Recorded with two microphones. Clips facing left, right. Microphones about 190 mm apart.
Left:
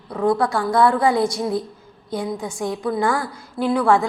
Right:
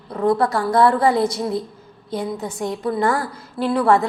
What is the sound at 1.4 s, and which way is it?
A woman's voice, centre (ahead or behind).